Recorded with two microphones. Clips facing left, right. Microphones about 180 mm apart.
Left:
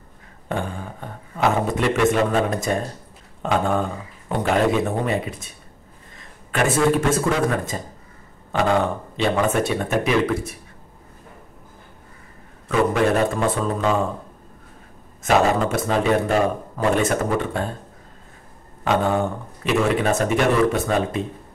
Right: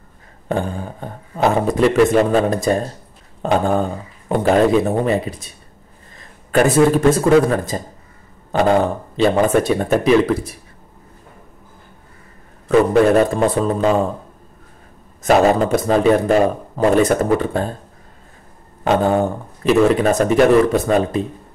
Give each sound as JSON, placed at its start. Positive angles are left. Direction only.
{"t": 0.5, "sound": "a man's voice", "side_deg": -35}
{"t": 6.5, "sound": "a man's voice", "side_deg": -35}
{"t": 13.3, "sound": "a man's voice", "side_deg": -35}
{"t": 15.2, "sound": "a man's voice", "side_deg": -35}
{"t": 18.9, "sound": "a man's voice", "side_deg": -35}